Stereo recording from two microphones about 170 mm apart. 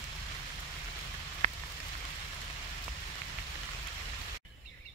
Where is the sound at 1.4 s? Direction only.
40° right (ahead or behind).